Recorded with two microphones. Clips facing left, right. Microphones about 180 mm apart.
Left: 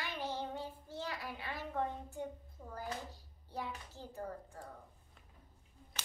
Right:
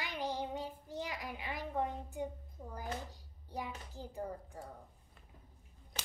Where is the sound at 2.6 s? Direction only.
15° right (ahead or behind).